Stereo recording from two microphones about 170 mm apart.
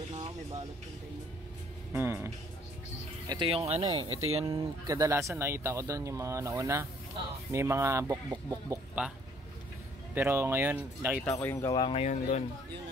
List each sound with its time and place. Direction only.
1.9 s speech: 15° right (ahead or behind)
3.3 s speech: 30° right (ahead or behind)
4.8 s speech: 20° right (ahead or behind)
9.0 s speech: 5° right (ahead or behind)
10.1 s speech: 15° right (ahead or behind)
11.2 s speech: 10° left (ahead or behind); by 12.1 s 30° left (ahead or behind)
12.1 s speech: 45° left (ahead or behind)